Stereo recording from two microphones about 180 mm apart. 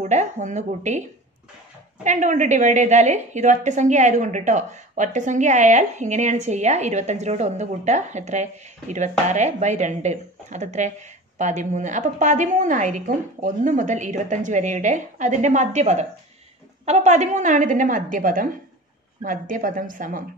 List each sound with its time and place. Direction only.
0.0 s a woman's voice: 40° right (ahead or behind)
2.0 s a woman's voice: 45° right (ahead or behind)